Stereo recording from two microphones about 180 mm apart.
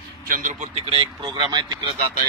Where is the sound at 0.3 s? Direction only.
45° right (ahead or behind); by 1.7 s 25° right (ahead or behind).